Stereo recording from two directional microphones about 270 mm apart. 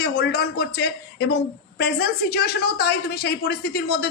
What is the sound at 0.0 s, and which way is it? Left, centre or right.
Speech, left.